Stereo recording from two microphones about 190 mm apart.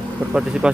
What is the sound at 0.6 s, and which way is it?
Speech, 5° right (ahead or behind).